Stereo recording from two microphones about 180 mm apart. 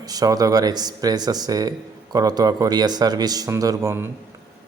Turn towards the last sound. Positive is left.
turn(degrees=-15)  # may be behind; listen again after turning